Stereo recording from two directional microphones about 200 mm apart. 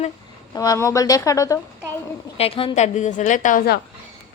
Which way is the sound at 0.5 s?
20° left (ahead or behind).